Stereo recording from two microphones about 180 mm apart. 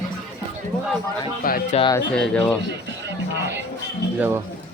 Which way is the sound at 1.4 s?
55° left (ahead or behind).